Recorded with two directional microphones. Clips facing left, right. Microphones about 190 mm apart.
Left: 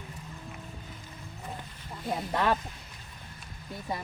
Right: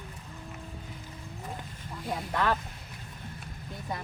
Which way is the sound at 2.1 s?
20° left (ahead or behind).